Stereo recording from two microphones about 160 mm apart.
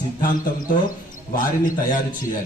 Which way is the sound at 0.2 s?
60° left (ahead or behind).